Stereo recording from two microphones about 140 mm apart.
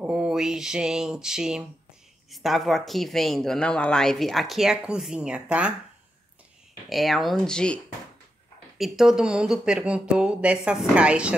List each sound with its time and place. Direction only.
0.0 s speech: 5° right (ahead or behind)
6.9 s speech: centre (ahead or behind)